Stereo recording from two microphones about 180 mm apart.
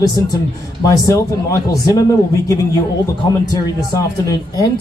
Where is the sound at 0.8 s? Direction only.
20° left (ahead or behind).